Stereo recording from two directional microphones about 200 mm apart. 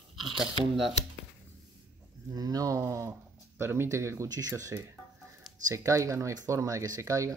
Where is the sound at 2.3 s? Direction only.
20° right (ahead or behind).